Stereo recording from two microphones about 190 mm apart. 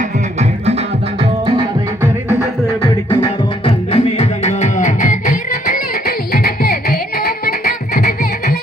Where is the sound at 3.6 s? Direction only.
30° left (ahead or behind).